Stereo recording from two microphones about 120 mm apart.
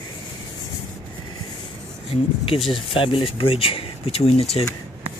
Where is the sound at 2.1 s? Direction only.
50° left (ahead or behind).